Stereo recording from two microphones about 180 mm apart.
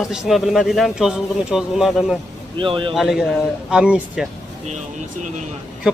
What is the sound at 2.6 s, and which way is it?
Speech, 30° right (ahead or behind).